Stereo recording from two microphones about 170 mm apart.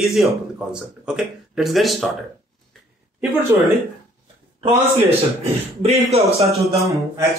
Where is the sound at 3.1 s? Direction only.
10° right (ahead or behind).